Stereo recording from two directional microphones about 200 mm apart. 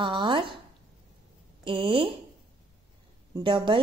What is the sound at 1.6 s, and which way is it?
Speech, 25° right (ahead or behind).